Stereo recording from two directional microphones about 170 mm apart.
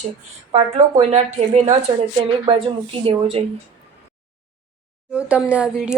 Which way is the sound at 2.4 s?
30° right (ahead or behind).